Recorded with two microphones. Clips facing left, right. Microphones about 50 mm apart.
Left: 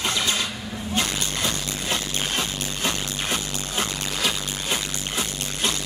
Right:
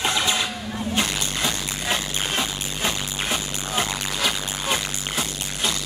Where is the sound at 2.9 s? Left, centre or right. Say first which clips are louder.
Right 1 dB; centre.